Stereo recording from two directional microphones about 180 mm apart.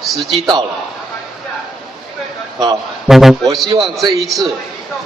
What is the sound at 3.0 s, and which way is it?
A man's voice, centre (ahead or behind).